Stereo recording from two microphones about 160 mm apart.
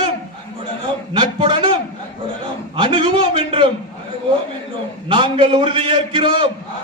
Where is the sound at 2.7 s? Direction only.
30° right (ahead or behind).